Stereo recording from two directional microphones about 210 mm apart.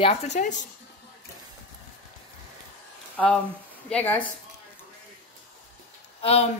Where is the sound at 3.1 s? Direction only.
5° left (ahead or behind).